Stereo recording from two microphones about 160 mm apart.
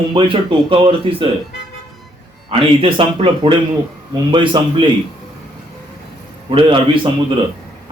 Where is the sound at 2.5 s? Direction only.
35° right (ahead or behind).